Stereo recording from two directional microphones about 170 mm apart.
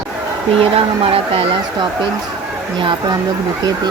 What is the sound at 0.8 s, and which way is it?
Speech, 35° right (ahead or behind).